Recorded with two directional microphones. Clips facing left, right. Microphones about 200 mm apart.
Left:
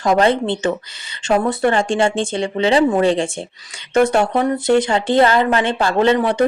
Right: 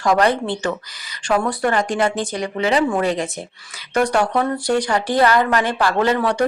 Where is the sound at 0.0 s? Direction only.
25° left (ahead or behind).